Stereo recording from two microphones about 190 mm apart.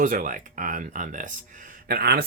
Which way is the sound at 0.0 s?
45° right (ahead or behind).